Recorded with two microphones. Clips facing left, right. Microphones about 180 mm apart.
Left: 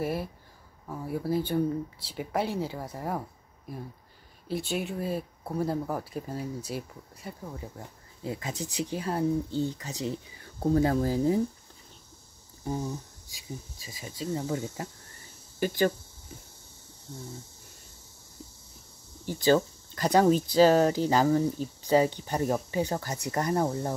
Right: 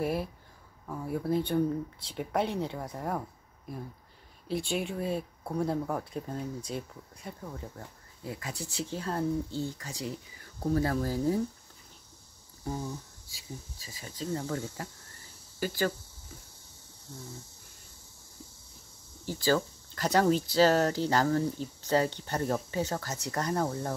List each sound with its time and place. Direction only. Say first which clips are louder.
0.0 s speech: even; centre (ahead or behind)
7.8 s speech: left 4 dB; 25° left (ahead or behind)
12.6 s speech: left 3 dB; 20° left (ahead or behind)
19.2 s speech: left 4 dB; 20° left (ahead or behind)